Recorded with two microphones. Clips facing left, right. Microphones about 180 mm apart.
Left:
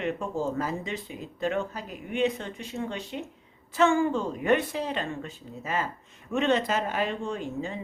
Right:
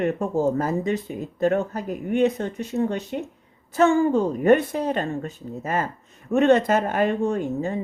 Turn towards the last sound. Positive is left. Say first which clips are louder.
# right 7 dB
turn(degrees=-50)  # may be behind; listen again after turning